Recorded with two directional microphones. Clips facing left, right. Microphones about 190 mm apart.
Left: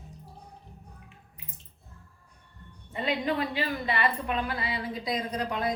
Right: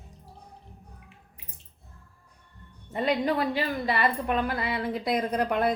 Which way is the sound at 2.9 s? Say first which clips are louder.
Right 3 dB; 45° right (ahead or behind).